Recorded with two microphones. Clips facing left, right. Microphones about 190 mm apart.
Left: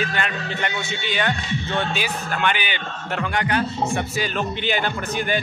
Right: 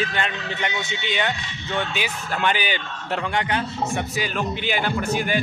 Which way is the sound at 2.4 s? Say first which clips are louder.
Right 2 dB; 35° right (ahead or behind).